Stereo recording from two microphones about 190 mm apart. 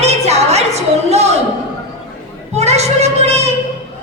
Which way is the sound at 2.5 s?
35° right (ahead or behind).